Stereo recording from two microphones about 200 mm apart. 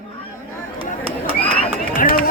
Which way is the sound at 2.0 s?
45° left (ahead or behind).